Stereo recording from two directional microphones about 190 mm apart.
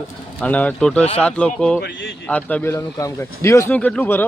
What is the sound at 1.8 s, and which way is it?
Speech, 65° left (ahead or behind).